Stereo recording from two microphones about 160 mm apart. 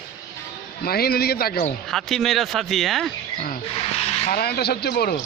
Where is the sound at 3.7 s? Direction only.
40° left (ahead or behind).